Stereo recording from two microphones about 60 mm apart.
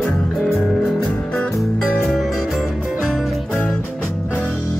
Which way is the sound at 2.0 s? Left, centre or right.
Centre.